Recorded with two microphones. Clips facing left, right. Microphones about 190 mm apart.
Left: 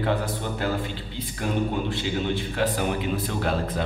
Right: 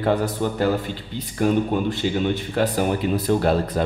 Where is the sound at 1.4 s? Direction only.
45° right (ahead or behind).